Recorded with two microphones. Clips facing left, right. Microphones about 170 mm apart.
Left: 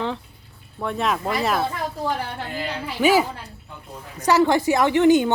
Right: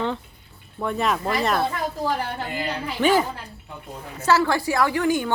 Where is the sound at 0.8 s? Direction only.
Centre (ahead or behind).